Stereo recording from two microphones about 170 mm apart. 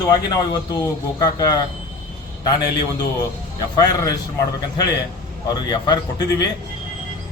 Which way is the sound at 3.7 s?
25° left (ahead or behind).